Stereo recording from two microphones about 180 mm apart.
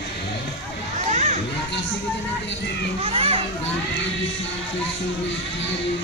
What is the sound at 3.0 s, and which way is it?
Children playing, 30° right (ahead or behind).